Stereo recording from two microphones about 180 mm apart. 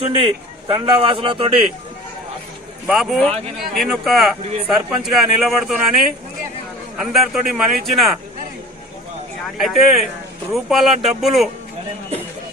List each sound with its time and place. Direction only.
0.2 s a man's voice: 30° right (ahead or behind)
2.8 s speech: centre (ahead or behind)
9.6 s speech: centre (ahead or behind)